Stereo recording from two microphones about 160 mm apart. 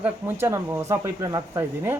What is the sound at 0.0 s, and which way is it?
A man's voice, 15° right (ahead or behind).